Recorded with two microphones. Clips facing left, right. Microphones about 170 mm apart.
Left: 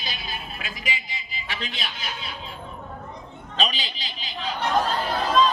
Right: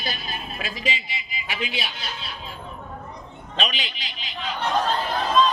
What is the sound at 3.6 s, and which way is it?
Speech, 35° left (ahead or behind).